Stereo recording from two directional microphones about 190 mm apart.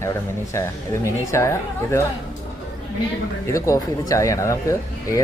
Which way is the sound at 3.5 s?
15° left (ahead or behind).